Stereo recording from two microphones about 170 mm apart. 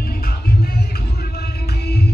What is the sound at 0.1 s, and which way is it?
Music, 60° left (ahead or behind).